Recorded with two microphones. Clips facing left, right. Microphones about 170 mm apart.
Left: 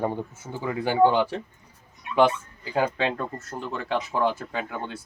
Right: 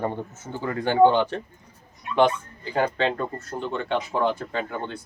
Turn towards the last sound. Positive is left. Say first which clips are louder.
# right 2 dB
turn(degrees=5)  # may be behind; listen again after turning